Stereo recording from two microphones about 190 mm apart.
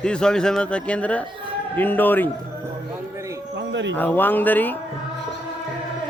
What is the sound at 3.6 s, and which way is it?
Speech, 70° right (ahead or behind).